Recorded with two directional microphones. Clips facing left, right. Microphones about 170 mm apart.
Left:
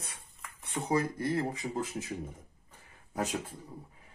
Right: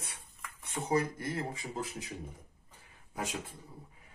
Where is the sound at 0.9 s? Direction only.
35° left (ahead or behind).